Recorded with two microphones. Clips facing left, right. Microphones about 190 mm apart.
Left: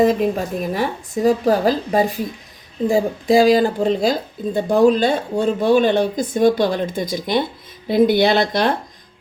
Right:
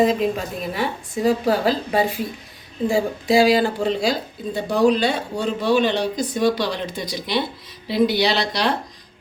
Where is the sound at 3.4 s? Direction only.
40° left (ahead or behind).